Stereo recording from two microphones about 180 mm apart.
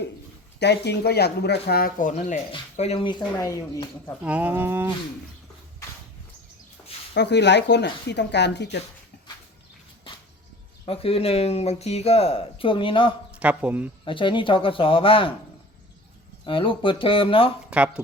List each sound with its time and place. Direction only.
0.6 s speech: 70° left (ahead or behind); by 4.1 s 20° left (ahead or behind)
4.2 s speech: 10° right (ahead or behind)
7.1 s speech: 70° left (ahead or behind)
10.1 s a sound: 30° left (ahead or behind)
10.8 s speech: 30° left (ahead or behind)
13.4 s speech: 5° right (ahead or behind)
14.0 s speech: 30° left (ahead or behind)
16.5 s speech: 30° left (ahead or behind)
17.7 s speech: 5° right (ahead or behind)